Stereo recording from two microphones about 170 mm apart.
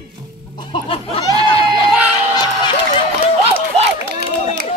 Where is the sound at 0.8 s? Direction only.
35° left (ahead or behind).